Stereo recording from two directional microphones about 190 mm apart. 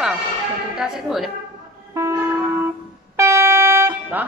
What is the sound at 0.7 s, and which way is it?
Speech, 5° right (ahead or behind).